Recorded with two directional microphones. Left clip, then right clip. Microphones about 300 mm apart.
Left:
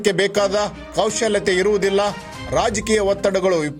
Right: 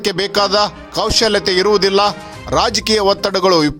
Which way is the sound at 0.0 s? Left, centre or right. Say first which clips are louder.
Right 2 dB; centre.